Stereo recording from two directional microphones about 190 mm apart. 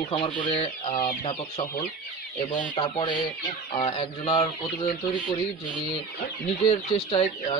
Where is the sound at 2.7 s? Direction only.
25° left (ahead or behind).